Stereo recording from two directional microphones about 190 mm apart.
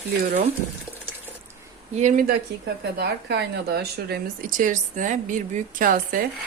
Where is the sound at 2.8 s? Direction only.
60° right (ahead or behind).